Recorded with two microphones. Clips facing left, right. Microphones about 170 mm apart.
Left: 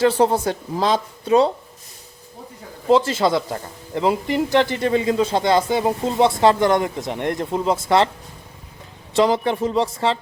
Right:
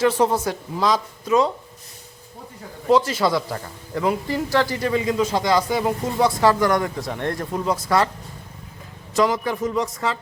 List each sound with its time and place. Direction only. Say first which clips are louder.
0.0 s speech: left 2 dB; 30° left (ahead or behind)
2.9 s a man's voice: left 2 dB; 25° left (ahead or behind)
9.1 s a man's voice: left 3 dB; 30° left (ahead or behind)